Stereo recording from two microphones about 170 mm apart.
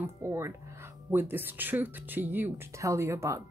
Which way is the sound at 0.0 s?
15° right (ahead or behind).